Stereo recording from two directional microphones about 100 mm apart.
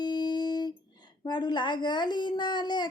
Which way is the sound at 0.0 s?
45° left (ahead or behind).